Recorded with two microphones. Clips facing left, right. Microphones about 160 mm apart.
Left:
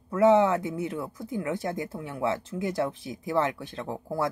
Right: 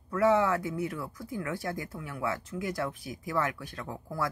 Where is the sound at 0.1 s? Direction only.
20° left (ahead or behind).